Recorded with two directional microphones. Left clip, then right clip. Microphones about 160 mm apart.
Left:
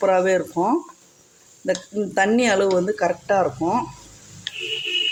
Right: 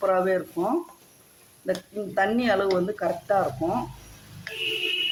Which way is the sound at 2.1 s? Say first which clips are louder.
Left 4 dB; 50° left (ahead or behind).